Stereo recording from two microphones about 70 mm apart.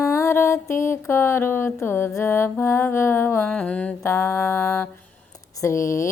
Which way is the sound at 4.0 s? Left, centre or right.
Left.